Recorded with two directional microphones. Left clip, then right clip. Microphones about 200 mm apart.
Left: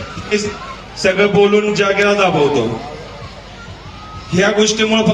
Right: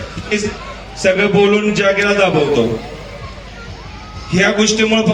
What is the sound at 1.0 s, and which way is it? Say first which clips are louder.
A man's voice: even; 55° left (ahead or behind).